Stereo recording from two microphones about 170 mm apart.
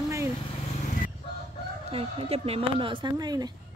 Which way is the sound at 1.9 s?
35° right (ahead or behind).